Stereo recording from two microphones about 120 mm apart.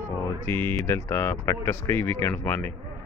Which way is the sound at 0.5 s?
20° left (ahead or behind).